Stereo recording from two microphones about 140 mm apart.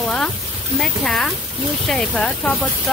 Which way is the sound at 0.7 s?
5° left (ahead or behind).